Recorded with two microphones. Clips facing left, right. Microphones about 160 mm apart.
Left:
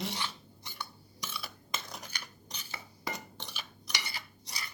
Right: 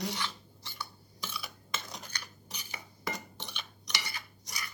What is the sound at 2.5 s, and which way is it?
Cutlery, 15° right (ahead or behind).